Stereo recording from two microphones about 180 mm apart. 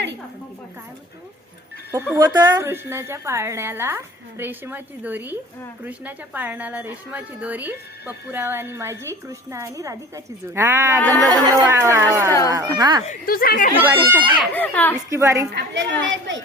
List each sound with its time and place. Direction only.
2.1 s a woman's voice: 20° right (ahead or behind)
12.3 s a child's voice: 20° left (ahead or behind)
12.5 s speech: 20° right (ahead or behind)
13.1 s speech: 55° left (ahead or behind)
14.2 s a child's voice: 10° left (ahead or behind)
15.1 s a woman's voice: 15° right (ahead or behind)
15.5 s a woman's voice: 80° right